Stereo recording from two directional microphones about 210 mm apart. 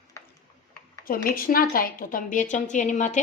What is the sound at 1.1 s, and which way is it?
A woman's voice, 45° left (ahead or behind).